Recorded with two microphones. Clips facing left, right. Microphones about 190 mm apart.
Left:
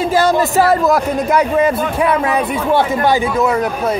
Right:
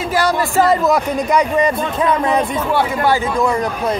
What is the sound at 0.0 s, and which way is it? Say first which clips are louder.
Speech: left 4 dB; 25° left (ahead or behind).